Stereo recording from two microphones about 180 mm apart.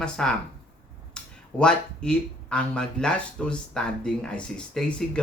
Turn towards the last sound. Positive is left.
turn(degrees=5)  # may be behind; listen again after turning